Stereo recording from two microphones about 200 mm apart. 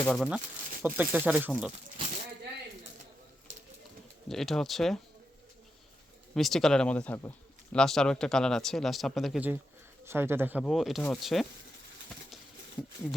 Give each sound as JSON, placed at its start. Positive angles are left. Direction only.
{"t": 0.0, "sound": "speech", "side_deg": 5}
{"t": 0.3, "sound": "speech", "side_deg": -5}
{"t": 4.3, "sound": "speech", "side_deg": 0}
{"t": 6.3, "sound": "speech", "side_deg": 0}
{"t": 10.6, "sound": "speech", "side_deg": 0}